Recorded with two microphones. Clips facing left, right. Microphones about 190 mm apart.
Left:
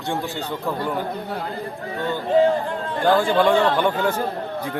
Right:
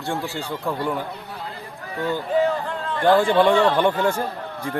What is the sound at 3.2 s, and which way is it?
Speech, centre (ahead or behind).